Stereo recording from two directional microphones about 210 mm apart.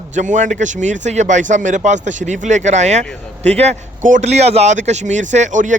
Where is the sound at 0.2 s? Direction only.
35° right (ahead or behind).